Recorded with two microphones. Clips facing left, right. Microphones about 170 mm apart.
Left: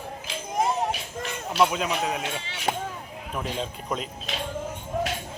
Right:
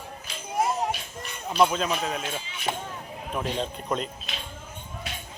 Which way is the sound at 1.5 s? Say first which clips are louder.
Right 1 dB; 10° left (ahead or behind).